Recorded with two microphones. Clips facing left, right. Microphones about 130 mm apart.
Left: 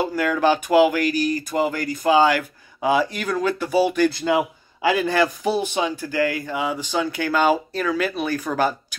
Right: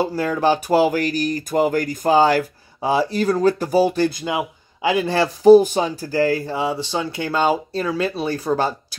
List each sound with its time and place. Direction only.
0.0 s speech: 30° right (ahead or behind)
4.1 s a man's voice: 20° right (ahead or behind)